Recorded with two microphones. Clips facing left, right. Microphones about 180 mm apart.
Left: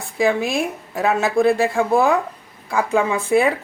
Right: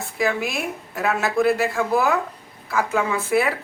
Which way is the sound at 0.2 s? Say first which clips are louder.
Left 5 dB; 30° left (ahead or behind).